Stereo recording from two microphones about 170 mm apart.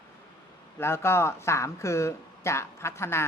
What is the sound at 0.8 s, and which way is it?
A woman's voice, 15° left (ahead or behind).